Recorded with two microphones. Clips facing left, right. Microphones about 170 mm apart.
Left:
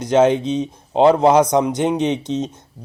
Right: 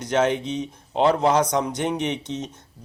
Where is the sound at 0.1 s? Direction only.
25° left (ahead or behind).